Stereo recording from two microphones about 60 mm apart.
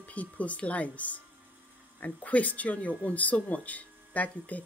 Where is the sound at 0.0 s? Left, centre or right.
Left.